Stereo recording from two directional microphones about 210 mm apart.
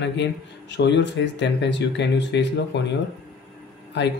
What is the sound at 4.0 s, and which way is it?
Speech, 55° left (ahead or behind).